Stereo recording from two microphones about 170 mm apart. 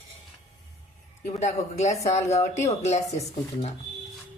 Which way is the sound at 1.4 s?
40° left (ahead or behind).